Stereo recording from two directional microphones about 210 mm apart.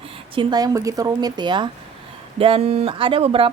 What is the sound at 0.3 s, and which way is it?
Speech, 20° right (ahead or behind).